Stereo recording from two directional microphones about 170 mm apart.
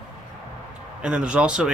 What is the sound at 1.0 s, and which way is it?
Speech, 5° right (ahead or behind).